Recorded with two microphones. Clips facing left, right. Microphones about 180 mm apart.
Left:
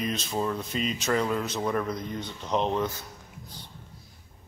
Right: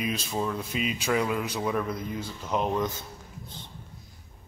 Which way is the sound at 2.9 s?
25° right (ahead or behind).